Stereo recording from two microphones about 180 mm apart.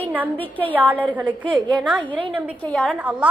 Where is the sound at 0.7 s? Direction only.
10° right (ahead or behind).